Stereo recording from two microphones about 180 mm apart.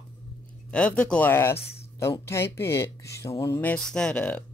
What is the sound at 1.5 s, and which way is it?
Speech, 35° left (ahead or behind).